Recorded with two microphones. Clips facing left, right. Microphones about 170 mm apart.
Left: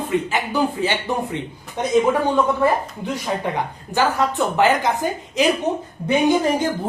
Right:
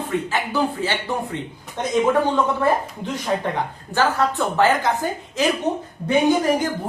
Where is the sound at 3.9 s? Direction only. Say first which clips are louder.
Left 1 dB; 15° left (ahead or behind).